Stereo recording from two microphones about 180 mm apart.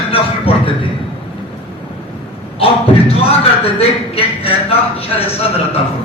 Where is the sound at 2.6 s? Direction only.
30° left (ahead or behind).